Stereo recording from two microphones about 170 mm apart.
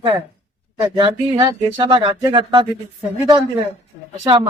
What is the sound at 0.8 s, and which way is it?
Speech, 25° right (ahead or behind).